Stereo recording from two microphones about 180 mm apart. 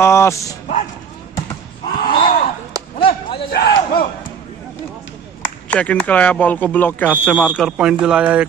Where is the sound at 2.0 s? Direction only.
30° left (ahead or behind).